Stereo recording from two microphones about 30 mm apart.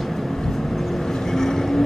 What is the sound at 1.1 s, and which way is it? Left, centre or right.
Vehicle, centre.